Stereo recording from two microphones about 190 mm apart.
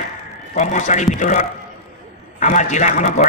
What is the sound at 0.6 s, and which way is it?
Speech, 40° left (ahead or behind).